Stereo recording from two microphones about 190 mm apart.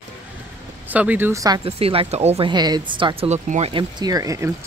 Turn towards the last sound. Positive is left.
turn(degrees=-15)  # may be behind; listen again after turning